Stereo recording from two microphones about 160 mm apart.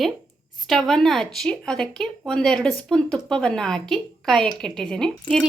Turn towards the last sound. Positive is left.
turn(degrees=5)  # may be behind; listen again after turning